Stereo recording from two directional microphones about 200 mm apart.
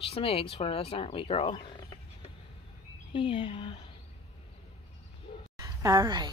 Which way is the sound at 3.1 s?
25° left (ahead or behind).